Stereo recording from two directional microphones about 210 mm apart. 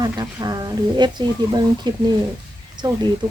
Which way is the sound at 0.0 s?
20° right (ahead or behind).